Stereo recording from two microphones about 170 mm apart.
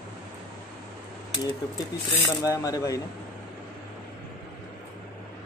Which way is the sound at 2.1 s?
20° left (ahead or behind).